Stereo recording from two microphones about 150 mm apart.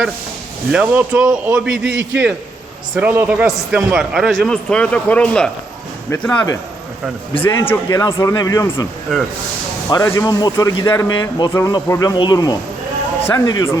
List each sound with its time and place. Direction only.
0.7 s a man's voice: 5° right (ahead or behind)
6.1 s speech: 20° left (ahead or behind)
9.1 s a man's voice: centre (ahead or behind)
9.9 s speech: 20° left (ahead or behind)